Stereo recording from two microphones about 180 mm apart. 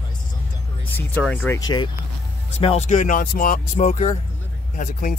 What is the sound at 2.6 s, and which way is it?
Speech, 35° left (ahead or behind).